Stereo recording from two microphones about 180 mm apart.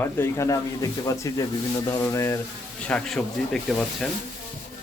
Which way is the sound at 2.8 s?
5° left (ahead or behind).